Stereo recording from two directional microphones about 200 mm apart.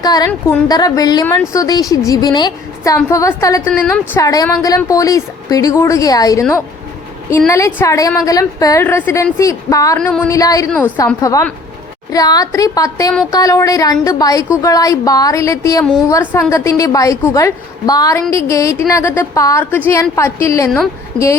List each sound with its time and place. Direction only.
0.0 s a woman's voice: 20° left (ahead or behind)